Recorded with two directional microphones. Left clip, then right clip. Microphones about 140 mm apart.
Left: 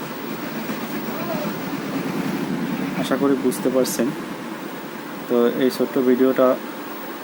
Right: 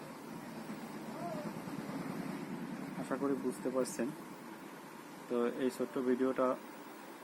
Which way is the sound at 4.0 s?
5° left (ahead or behind).